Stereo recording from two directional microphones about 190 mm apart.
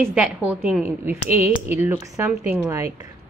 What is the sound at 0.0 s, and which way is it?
A woman's voice, 5° right (ahead or behind).